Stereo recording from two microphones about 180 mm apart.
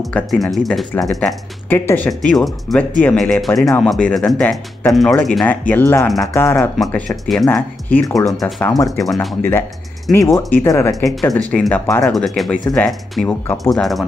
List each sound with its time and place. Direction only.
0.0 s speech: centre (ahead or behind)
8.6 s speech: 15° left (ahead or behind)
9.0 s speech: centre (ahead or behind)
9.4 s speech: 10° left (ahead or behind)
11.1 s speech: centre (ahead or behind)